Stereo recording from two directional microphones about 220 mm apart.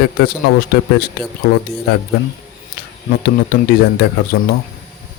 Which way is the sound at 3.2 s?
45° left (ahead or behind).